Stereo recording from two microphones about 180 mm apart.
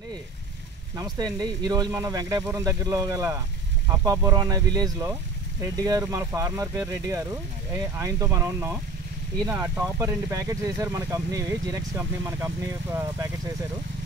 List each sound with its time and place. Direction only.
0.9 s speech: 20° right (ahead or behind)